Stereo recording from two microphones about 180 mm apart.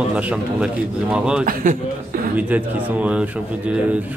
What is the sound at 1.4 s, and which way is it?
Speech, 50° right (ahead or behind).